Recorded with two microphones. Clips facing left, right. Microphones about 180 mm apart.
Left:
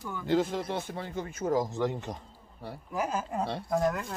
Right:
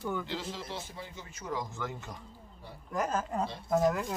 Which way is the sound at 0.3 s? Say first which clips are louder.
Left 11 dB; 50° left (ahead or behind).